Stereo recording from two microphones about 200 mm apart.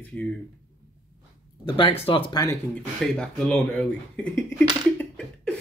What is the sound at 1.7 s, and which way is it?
Speech, 30° left (ahead or behind).